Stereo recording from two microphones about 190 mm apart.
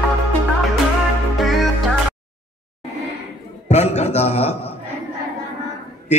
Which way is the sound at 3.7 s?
35° left (ahead or behind).